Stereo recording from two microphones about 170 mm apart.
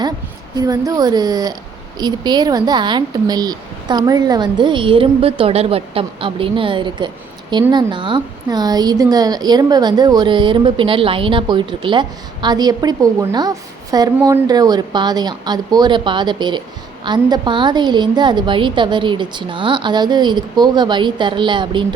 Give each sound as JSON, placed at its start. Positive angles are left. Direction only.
{"t": 0.5, "sound": "a woman's voice", "side_deg": -20}